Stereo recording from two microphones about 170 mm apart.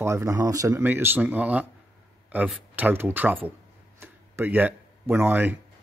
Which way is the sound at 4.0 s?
15° right (ahead or behind).